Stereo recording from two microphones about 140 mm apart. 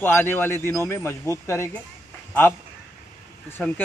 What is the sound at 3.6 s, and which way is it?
Speech, 10° left (ahead or behind).